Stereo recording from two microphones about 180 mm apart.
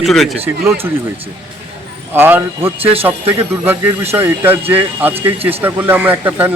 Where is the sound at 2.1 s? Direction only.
10° right (ahead or behind).